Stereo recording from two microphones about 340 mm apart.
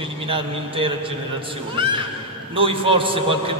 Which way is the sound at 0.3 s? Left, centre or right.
Centre.